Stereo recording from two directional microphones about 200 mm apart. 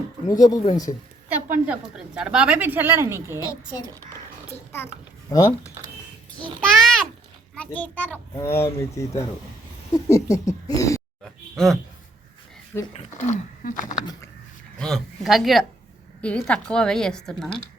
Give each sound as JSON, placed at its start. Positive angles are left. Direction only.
{"t": 0.3, "sound": "speech", "side_deg": 20}
{"t": 1.6, "sound": "a woman's voice", "side_deg": -5}
{"t": 5.3, "sound": "a child's voice", "side_deg": 15}
{"t": 6.7, "sound": "a sound", "side_deg": 5}
{"t": 7.5, "sound": "a child's voice", "side_deg": 5}
{"t": 11.2, "sound": "a sound", "side_deg": 0}
{"t": 12.9, "sound": "speech", "side_deg": 35}
{"t": 14.8, "sound": "a woman's voice", "side_deg": 0}